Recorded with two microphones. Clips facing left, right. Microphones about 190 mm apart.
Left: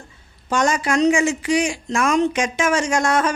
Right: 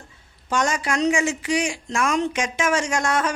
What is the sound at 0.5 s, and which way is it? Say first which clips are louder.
Speech: left 4 dB; 45° left (ahead or behind).